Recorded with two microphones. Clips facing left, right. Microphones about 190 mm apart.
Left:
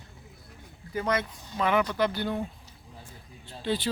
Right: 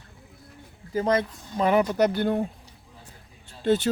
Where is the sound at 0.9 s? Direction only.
30° right (ahead or behind); by 2.4 s 50° right (ahead or behind).